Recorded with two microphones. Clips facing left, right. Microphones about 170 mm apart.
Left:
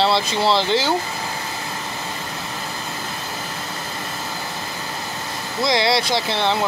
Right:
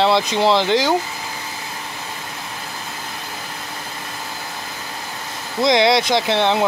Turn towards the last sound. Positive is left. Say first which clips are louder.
# right 4 dB
turn(degrees=-20)  # may be behind; listen again after turning